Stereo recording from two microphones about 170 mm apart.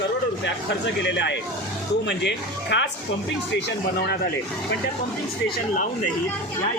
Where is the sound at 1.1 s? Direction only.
90° left.